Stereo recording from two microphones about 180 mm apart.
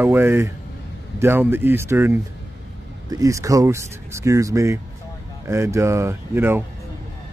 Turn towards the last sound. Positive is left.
turn(degrees=-10)  # may be behind; listen again after turning